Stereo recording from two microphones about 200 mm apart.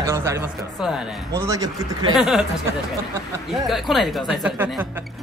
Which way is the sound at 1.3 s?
15° right (ahead or behind).